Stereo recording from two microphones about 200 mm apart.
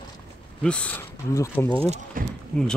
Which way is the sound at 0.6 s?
5° left (ahead or behind).